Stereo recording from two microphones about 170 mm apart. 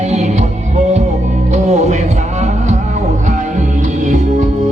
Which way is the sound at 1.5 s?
40° right (ahead or behind).